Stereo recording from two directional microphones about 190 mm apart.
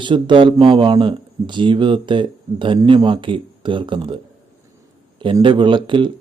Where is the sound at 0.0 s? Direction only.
25° right (ahead or behind).